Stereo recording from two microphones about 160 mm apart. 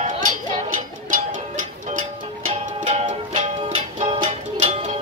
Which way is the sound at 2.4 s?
40° right (ahead or behind).